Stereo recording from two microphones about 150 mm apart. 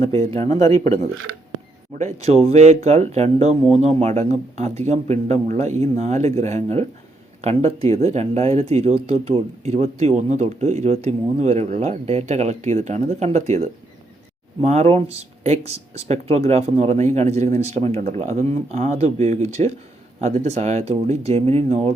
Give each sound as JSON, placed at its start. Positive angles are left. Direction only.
{"t": 0.3, "sound": "speech", "side_deg": -40}
{"t": 2.0, "sound": "speech", "side_deg": -50}